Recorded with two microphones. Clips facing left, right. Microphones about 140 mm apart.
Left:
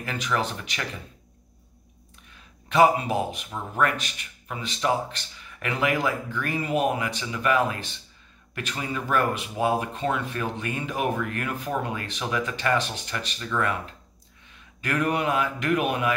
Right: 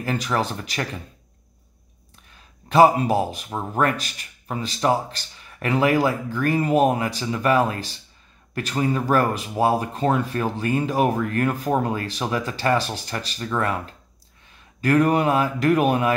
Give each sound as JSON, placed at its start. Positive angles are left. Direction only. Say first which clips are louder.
{"t": 0.0, "sound": "a man's voice", "louder": "right 4 dB", "side_deg": -35}
{"t": 2.7, "sound": "a man's voice", "louder": "right 4 dB", "side_deg": -35}
{"t": 14.8, "sound": "a man's voice", "louder": "right 7 dB", "side_deg": -35}